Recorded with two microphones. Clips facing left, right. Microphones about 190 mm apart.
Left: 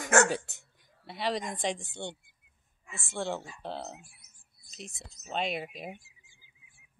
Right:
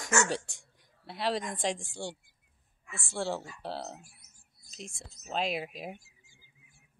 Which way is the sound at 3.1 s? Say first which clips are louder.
Even; centre (ahead or behind).